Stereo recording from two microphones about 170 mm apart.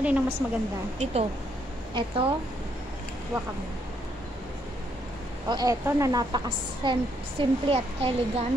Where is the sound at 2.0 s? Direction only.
35° right (ahead or behind).